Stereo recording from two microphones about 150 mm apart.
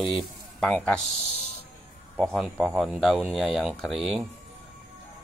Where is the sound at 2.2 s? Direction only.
Centre (ahead or behind).